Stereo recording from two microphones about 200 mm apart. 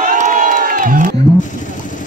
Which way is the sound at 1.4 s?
40° left (ahead or behind).